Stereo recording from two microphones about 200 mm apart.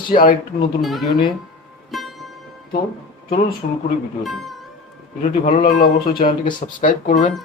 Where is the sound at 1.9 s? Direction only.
Centre (ahead or behind).